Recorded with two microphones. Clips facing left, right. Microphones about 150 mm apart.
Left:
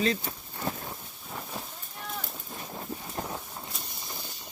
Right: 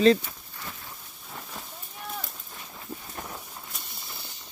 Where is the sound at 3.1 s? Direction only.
25° left (ahead or behind).